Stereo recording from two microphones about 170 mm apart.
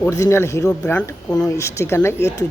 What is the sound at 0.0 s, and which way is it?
Speech, 15° left (ahead or behind).